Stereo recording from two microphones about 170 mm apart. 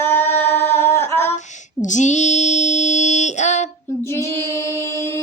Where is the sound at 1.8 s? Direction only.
45° left (ahead or behind).